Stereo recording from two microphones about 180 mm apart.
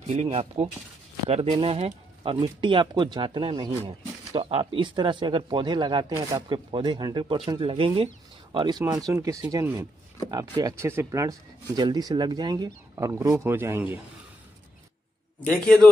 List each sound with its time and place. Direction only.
0.0 s speech: 35° right (ahead or behind); by 13.9 s 10° right (ahead or behind)
15.5 s a man's voice: 5° left (ahead or behind)